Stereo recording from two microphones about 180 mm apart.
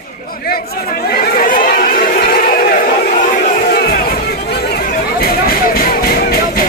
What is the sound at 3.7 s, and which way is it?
Chatter, 60° left (ahead or behind).